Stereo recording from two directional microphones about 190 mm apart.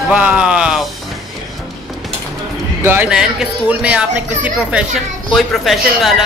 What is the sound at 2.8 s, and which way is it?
Speech, 5° right (ahead or behind).